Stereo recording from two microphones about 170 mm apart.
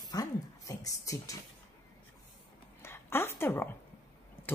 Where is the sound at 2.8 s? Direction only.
15° left (ahead or behind).